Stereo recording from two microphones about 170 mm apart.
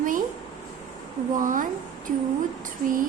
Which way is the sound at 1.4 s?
50° right (ahead or behind).